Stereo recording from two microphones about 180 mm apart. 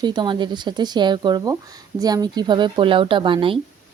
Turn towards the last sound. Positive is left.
turn(degrees=-30)  # may be behind; listen again after turning